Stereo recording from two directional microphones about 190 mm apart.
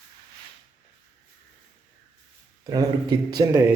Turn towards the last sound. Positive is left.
turn(degrees=-20)  # may be behind; listen again after turning